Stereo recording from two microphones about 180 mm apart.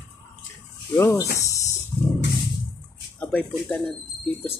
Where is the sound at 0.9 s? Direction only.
15° left (ahead or behind).